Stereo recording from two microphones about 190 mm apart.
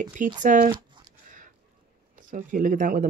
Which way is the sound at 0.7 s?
25° right (ahead or behind).